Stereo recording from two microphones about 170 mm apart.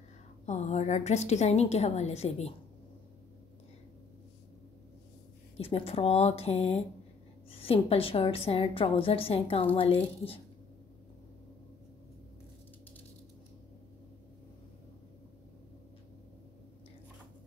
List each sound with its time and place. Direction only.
0.5 s a woman's voice: 40° left (ahead or behind)
5.6 s a woman's voice: 35° left (ahead or behind)